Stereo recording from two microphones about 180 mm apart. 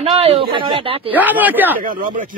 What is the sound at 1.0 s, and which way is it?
Speech, 10° right (ahead or behind).